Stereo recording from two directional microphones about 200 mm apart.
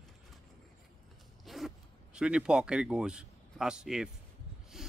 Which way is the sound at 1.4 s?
Centre (ahead or behind).